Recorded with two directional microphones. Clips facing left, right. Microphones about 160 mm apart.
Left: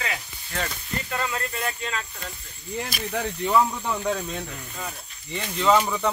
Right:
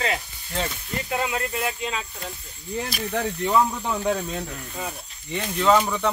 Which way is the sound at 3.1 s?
5° right (ahead or behind).